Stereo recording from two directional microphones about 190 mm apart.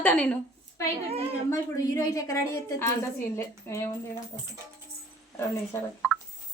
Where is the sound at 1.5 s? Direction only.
20° left (ahead or behind).